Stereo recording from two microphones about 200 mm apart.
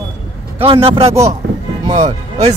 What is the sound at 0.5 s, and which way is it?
Speech, 30° right (ahead or behind).